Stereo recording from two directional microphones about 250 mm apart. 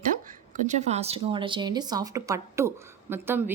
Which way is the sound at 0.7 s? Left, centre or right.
Right.